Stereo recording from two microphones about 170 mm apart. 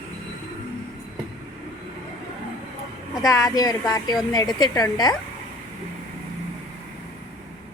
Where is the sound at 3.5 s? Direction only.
20° left (ahead or behind).